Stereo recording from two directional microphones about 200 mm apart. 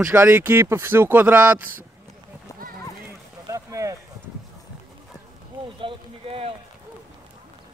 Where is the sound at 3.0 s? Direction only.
15° right (ahead or behind).